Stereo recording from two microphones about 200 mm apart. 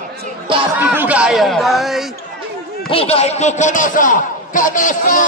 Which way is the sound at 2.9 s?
30° left (ahead or behind).